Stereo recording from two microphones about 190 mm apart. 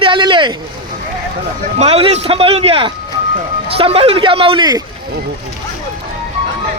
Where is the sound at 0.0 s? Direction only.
25° right (ahead or behind).